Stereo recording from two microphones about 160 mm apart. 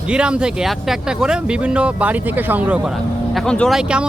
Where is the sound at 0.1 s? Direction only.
5° right (ahead or behind).